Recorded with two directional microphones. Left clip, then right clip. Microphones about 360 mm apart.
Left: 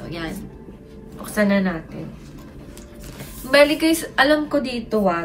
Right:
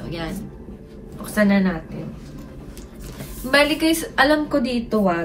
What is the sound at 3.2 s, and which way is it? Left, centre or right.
A woman's voice, centre.